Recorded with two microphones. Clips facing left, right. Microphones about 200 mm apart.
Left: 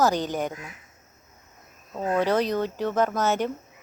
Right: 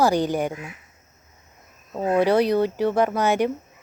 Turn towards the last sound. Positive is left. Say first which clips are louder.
# right 3 dB
turn(degrees=-10)  # may be behind; listen again after turning